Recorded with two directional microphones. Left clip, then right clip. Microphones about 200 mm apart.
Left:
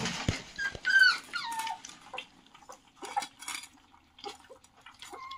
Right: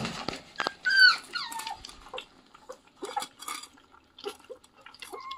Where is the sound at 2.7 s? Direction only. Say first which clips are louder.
Even; centre (ahead or behind).